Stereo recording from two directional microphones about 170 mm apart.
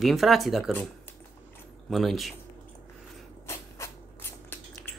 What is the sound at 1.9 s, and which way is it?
Speech, centre (ahead or behind).